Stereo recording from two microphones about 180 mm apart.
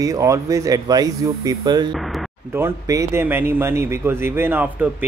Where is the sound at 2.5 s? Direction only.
15° right (ahead or behind).